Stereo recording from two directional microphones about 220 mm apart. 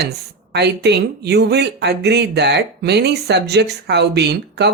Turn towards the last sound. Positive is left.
turn(degrees=-50)  # may be behind; listen again after turning